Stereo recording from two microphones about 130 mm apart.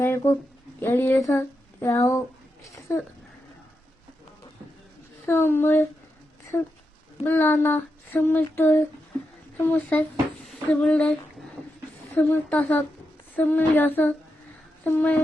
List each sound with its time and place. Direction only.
0.0 s speech: 15° left (ahead or behind)
5.2 s female singing: 15° left (ahead or behind)
10.4 s speech: 5° left (ahead or behind)
12.1 s female singing: 10° left (ahead or behind)